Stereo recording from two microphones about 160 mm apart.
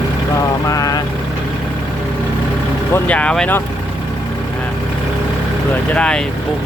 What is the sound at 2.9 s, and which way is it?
Speech, 10° left (ahead or behind).